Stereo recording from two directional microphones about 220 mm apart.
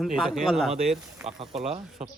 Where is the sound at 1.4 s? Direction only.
30° right (ahead or behind).